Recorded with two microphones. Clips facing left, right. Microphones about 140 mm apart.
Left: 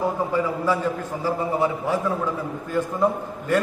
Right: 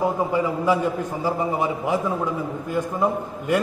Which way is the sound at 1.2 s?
15° right (ahead or behind).